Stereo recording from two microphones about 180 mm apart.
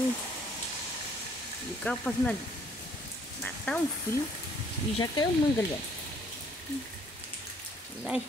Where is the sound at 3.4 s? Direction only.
5° left (ahead or behind).